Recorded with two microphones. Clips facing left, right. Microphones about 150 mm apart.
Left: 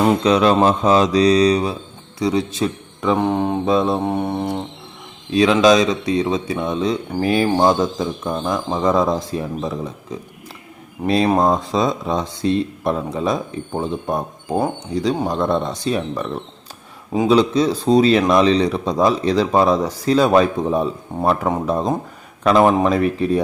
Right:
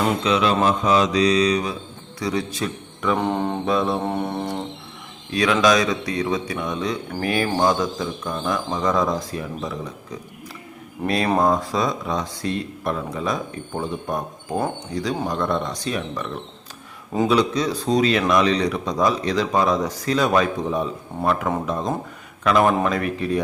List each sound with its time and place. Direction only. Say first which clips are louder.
0.3 s a man's voice: left 4 dB; 40° left (ahead or behind); by 3.2 s 25° left (ahead or behind)
3.2 s speech: left 4 dB; 10° left (ahead or behind)
3.7 s speech: left 4 dB; 25° left (ahead or behind)
4.0 s speech: left 4 dB; 10° left (ahead or behind)
5.3 s speech: left 5 dB; 25° left (ahead or behind)